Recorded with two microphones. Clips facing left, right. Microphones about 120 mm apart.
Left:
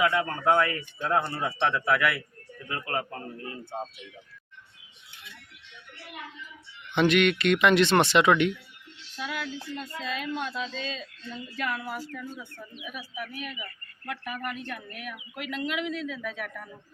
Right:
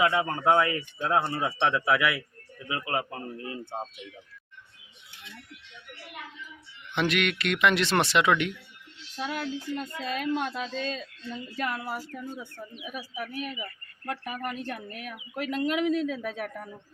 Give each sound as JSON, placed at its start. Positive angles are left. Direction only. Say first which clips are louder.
{"t": 0.0, "sound": "speech", "louder": "right 1 dB", "side_deg": -20}
{"t": 6.9, "sound": "speech", "louder": "left 5 dB", "side_deg": 0}
{"t": 9.1, "sound": "speech", "louder": "right 2 dB", "side_deg": -35}
{"t": 9.8, "sound": "speech", "louder": "right 3 dB", "side_deg": -45}